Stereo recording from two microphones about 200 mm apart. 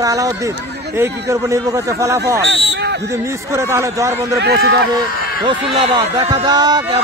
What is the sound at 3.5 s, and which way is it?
A man's voice, 15° right (ahead or behind).